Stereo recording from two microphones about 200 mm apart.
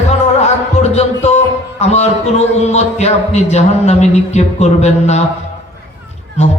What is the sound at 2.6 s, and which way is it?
Speech, 35° left (ahead or behind).